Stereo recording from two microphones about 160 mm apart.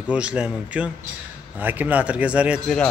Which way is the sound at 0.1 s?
10° right (ahead or behind).